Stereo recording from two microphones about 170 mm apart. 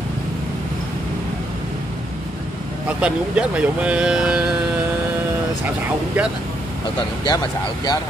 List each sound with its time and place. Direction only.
3.0 s speech: 5° right (ahead or behind)
7.2 s speech: 25° left (ahead or behind)